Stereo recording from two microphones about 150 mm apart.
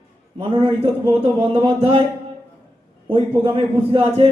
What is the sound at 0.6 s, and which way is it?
A man's voice, 40° right (ahead or behind).